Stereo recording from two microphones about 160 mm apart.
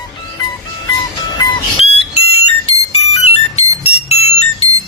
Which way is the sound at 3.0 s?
40° left (ahead or behind).